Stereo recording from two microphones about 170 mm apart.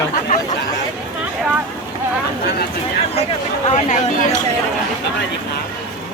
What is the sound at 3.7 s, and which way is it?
Speech, 40° left (ahead or behind).